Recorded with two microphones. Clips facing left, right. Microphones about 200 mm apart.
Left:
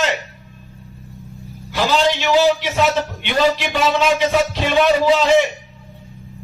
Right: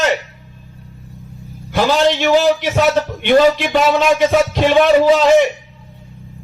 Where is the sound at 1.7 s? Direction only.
50° right (ahead or behind).